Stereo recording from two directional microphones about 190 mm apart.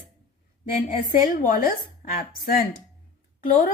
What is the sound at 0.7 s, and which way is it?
Speech, 50° left (ahead or behind).